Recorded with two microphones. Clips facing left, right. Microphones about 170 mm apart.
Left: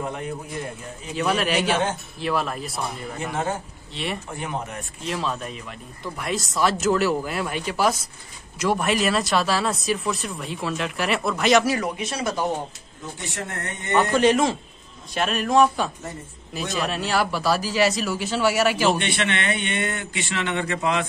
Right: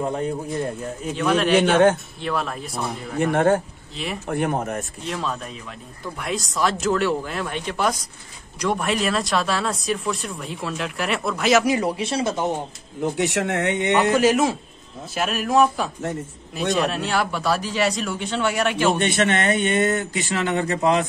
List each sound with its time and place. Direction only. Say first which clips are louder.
0.0 s speech: right 5 dB; 35° right (ahead or behind)
1.1 s speech: right 4 dB; 5° left (ahead or behind)
3.2 s speech: right 10 dB; 60° right (ahead or behind)
3.9 s speech: even; centre (ahead or behind)
4.3 s speech: right 7 dB; 55° right (ahead or behind)
5.0 s speech: left 4 dB; centre (ahead or behind)
11.8 s speech: right 4 dB; 30° right (ahead or behind)
13.0 s speech: right 11 dB; 75° right (ahead or behind)
13.9 s speech: left 1 dB; 5° right (ahead or behind)
18.9 s speech: right 5 dB; 45° right (ahead or behind)